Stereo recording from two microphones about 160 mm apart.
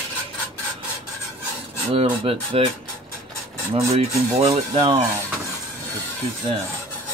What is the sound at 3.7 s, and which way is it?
Speech, 35° right (ahead or behind).